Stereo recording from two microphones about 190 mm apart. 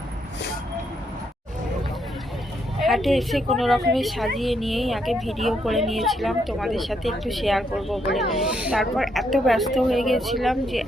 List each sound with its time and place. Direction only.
2.7 s speech: centre (ahead or behind)